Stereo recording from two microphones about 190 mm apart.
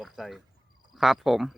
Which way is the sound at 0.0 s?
Centre (ahead or behind).